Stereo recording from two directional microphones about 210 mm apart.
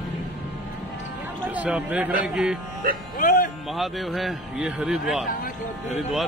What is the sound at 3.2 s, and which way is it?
Speech, 40° left (ahead or behind).